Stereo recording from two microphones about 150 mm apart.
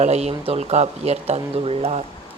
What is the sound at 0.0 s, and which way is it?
Speech, 45° right (ahead or behind).